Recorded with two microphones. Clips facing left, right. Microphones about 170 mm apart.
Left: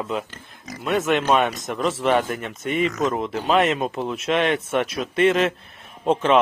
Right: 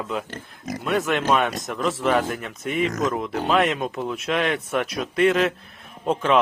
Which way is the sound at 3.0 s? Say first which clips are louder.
Left 1 dB; 30° left (ahead or behind).